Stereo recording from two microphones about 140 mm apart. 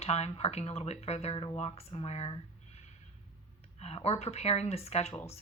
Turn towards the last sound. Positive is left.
turn(degrees=45)  # may be behind; listen again after turning